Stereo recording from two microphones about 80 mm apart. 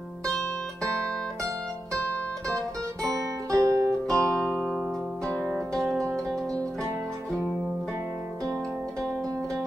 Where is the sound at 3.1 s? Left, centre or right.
Right.